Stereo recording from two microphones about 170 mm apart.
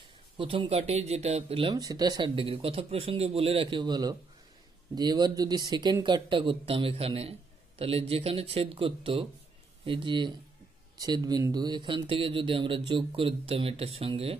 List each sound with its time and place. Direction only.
0.4 s speech: 30° right (ahead or behind)
1.8 s speech: 20° right (ahead or behind)